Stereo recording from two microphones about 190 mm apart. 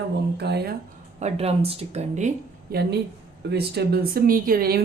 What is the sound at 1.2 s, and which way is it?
Speech, 30° right (ahead or behind).